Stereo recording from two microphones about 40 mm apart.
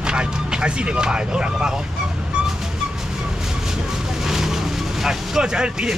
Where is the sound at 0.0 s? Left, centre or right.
Right.